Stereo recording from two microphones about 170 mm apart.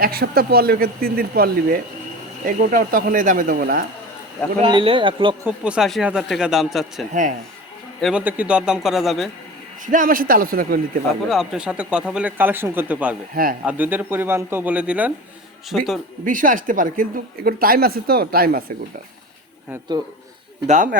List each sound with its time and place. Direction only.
0.0 s speech: 60° right (ahead or behind)
4.6 s speech: 30° right (ahead or behind)
5.5 s speech: 5° right (ahead or behind)
7.1 s a man's voice: 50° right (ahead or behind)
8.0 s speech: 5° right (ahead or behind)
9.8 s speech: 50° right (ahead or behind)
11.3 s speech: 5° right (ahead or behind)
13.3 s speech: 55° right (ahead or behind)
13.7 s speech: 10° right (ahead or behind)
16.2 s speech: 50° right (ahead or behind)
20.7 s a man's voice: 45° right (ahead or behind)